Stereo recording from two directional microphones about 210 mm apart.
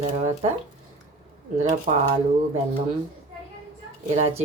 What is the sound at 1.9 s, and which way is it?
Speech, 25° right (ahead or behind).